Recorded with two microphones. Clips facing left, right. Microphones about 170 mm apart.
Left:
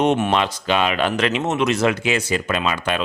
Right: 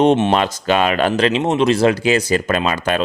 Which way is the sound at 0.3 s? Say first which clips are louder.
Right 3 dB; 45° right (ahead or behind).